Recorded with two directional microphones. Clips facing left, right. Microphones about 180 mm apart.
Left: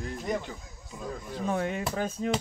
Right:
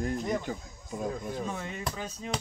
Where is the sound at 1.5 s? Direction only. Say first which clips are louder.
Left 7 dB; 55° left (ahead or behind).